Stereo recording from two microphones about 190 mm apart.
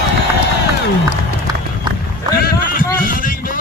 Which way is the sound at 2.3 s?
50° left (ahead or behind).